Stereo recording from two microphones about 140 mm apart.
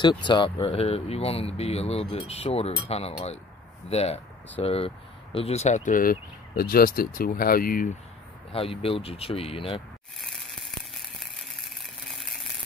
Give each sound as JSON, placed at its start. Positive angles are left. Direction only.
{"t": 0.0, "sound": "speech", "side_deg": 35}
{"t": 8.5, "sound": "speech", "side_deg": 45}
{"t": 10.2, "sound": "a sound", "side_deg": 0}